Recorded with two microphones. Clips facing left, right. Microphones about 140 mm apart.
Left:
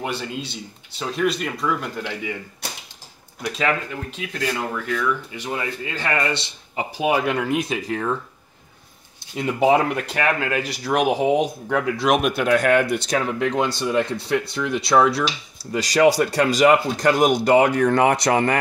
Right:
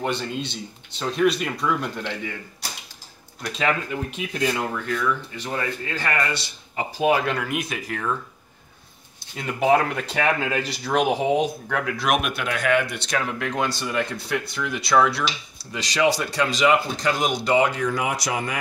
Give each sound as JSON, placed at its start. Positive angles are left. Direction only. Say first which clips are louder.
{"t": 0.0, "sound": "speech", "louder": "right 1 dB", "side_deg": 5}
{"t": 3.4, "sound": "speech", "louder": "left 1 dB", "side_deg": 0}
{"t": 5.3, "sound": "speech", "louder": "even", "side_deg": 15}
{"t": 7.4, "sound": "speech", "louder": "left 5 dB", "side_deg": 30}
{"t": 9.7, "sound": "speech", "louder": "even", "side_deg": 5}
{"t": 12.2, "sound": "speech", "louder": "left 8 dB", "side_deg": 40}
{"t": 13.9, "sound": "speech", "louder": "left 7 dB", "side_deg": 30}
{"t": 15.7, "sound": "speech", "louder": "left 5 dB", "side_deg": 45}